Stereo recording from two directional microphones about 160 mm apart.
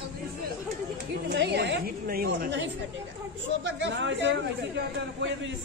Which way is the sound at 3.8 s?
90° right.